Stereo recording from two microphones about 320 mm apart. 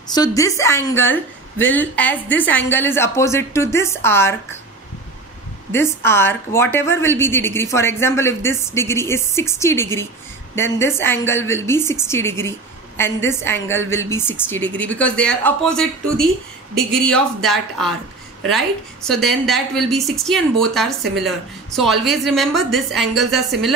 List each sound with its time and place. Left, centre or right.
0.1 s a woman's voice: centre
5.7 s a woman's voice: centre
17.0 s a woman's voice: centre
19.0 s a woman's voice: centre